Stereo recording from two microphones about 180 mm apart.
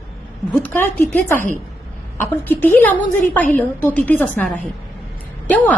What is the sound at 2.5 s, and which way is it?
A woman's voice, 10° left (ahead or behind).